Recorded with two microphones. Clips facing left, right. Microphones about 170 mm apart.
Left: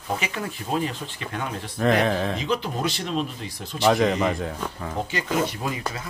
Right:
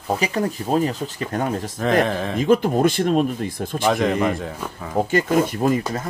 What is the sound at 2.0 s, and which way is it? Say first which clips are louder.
Speech: right 1 dB; centre (ahead or behind).